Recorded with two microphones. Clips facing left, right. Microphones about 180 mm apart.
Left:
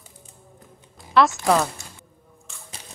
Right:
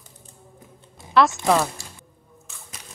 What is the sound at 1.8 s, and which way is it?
Music, 30° right (ahead or behind).